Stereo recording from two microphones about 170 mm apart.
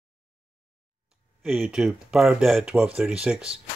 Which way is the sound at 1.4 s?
Centre (ahead or behind).